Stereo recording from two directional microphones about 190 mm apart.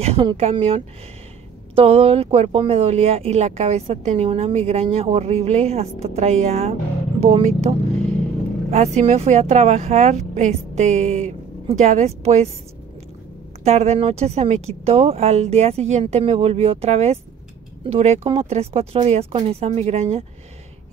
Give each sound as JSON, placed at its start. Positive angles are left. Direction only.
{"t": 0.0, "sound": "speech", "side_deg": -30}
{"t": 13.7, "sound": "speech", "side_deg": -35}